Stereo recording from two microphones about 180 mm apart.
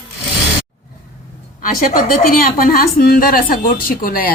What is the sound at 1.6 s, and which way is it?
A woman's voice, 50° left (ahead or behind).